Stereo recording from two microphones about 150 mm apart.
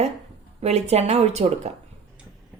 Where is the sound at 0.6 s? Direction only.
45° right (ahead or behind).